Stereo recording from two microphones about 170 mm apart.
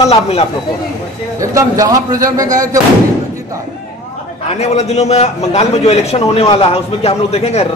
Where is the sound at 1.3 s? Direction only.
20° right (ahead or behind).